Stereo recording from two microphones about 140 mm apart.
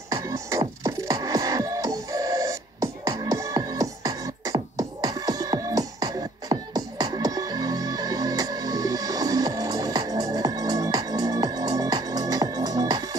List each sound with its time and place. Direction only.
0.1 s music: 20° right (ahead or behind)